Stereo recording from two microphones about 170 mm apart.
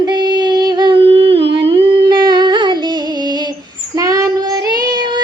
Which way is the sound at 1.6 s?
30° right (ahead or behind).